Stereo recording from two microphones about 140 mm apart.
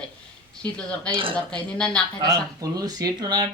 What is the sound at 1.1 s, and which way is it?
Speech, 40° right (ahead or behind).